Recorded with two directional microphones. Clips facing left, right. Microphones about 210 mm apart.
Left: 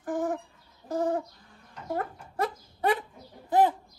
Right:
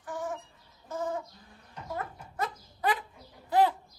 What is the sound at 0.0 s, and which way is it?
Bird, 40° left (ahead or behind).